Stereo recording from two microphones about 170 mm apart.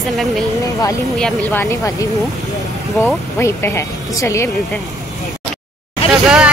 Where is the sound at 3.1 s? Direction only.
15° left (ahead or behind).